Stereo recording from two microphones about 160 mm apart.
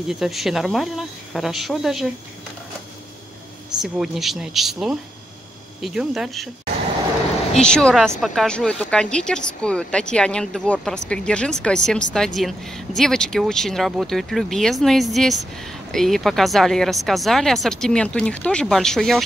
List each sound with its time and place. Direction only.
0.1 s speech: centre (ahead or behind)
3.8 s speech: centre (ahead or behind)
7.5 s speech: 5° left (ahead or behind)